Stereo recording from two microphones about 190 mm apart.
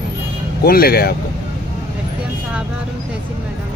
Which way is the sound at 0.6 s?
55° left (ahead or behind).